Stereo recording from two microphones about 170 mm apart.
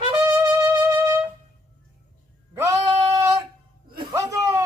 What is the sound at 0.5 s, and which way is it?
Music, 20° right (ahead or behind).